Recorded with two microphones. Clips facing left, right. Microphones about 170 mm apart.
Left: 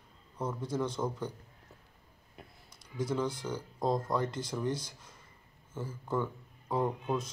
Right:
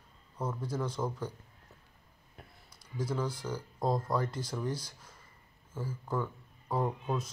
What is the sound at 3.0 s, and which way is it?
Speech, 5° right (ahead or behind).